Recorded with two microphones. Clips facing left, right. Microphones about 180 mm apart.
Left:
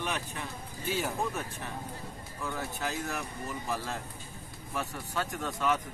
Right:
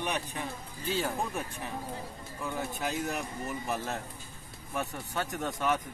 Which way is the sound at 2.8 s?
20° right (ahead or behind).